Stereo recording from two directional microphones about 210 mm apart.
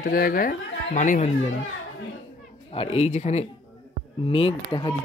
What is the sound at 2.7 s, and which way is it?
A woman's voice, 25° left (ahead or behind).